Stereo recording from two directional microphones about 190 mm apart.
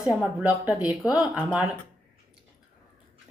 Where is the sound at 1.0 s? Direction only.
20° left (ahead or behind).